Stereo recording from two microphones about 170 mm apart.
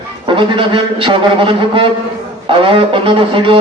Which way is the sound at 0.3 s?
30° right (ahead or behind).